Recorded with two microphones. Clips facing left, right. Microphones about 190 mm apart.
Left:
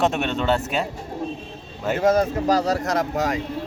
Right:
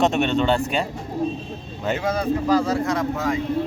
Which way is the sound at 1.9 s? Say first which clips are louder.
Left 5 dB; 45° left (ahead or behind).